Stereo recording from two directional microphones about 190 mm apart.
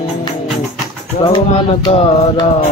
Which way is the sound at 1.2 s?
30° left (ahead or behind).